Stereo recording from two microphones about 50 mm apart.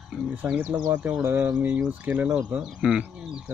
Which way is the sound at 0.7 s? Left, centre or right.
Right.